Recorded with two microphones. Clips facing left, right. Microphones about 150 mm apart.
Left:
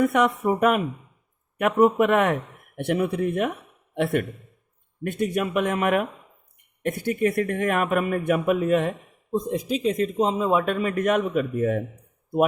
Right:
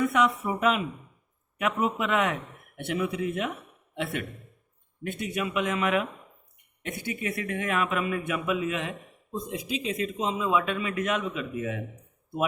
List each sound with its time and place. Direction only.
0.0 s speech: 55° left (ahead or behind)